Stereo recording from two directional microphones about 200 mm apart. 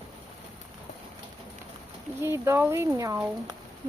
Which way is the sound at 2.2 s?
15° right (ahead or behind).